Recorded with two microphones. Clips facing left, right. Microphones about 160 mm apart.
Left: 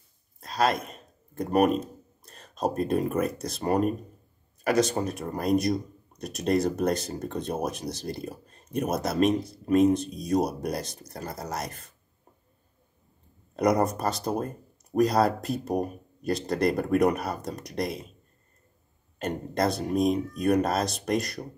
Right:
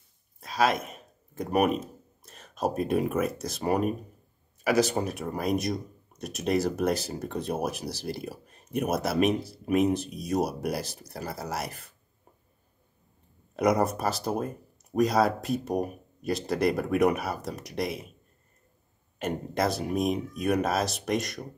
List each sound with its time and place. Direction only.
0.4 s speech: centre (ahead or behind)
4.9 s speech: 5° right (ahead or behind)
13.6 s speech: centre (ahead or behind)
19.1 s speech: 5° right (ahead or behind)